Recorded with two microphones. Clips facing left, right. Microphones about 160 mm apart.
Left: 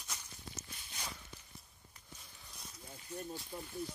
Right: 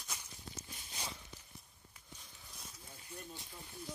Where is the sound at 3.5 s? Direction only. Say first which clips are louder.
Left 8 dB; 50° left (ahead or behind).